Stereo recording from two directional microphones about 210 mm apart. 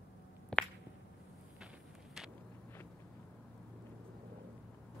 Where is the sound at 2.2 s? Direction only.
Centre (ahead or behind).